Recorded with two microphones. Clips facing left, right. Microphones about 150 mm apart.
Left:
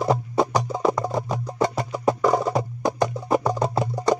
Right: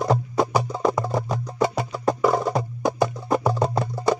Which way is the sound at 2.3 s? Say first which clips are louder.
Left 1 dB; 10° left (ahead or behind).